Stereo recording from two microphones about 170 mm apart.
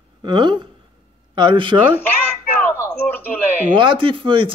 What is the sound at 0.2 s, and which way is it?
Speech, 30° right (ahead or behind).